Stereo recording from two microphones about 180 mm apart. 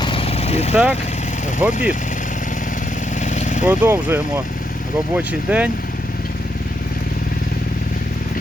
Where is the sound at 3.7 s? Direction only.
10° right (ahead or behind).